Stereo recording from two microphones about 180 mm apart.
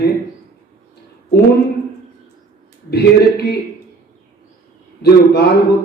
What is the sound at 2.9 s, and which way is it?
Speech, 60° left (ahead or behind).